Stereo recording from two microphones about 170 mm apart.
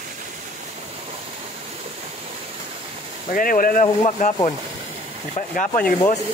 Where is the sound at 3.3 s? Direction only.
55° left (ahead or behind).